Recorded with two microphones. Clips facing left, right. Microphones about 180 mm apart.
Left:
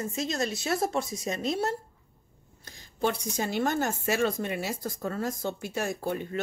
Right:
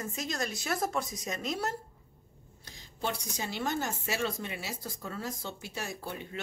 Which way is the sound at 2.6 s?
50° left (ahead or behind).